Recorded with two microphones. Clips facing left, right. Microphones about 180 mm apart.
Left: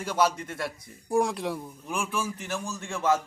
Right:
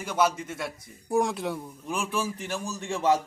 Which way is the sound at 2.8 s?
20° right (ahead or behind).